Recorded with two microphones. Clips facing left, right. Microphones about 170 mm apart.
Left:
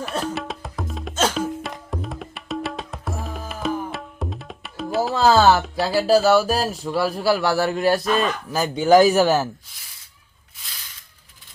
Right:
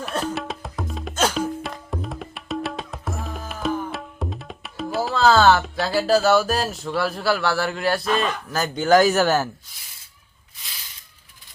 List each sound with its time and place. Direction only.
0.0 s music: centre (ahead or behind)
3.1 s tabla: centre (ahead or behind)
5.1 s speech: 15° left (ahead or behind)